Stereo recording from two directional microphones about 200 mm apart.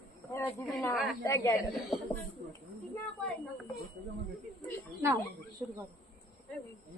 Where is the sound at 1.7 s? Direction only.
Centre (ahead or behind).